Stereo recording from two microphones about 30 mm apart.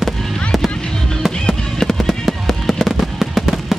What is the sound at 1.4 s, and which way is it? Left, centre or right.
Fireworks, centre.